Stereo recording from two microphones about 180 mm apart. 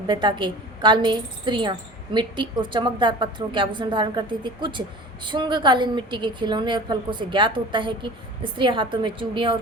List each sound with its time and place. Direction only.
0.1 s a woman's voice: 25° right (ahead or behind)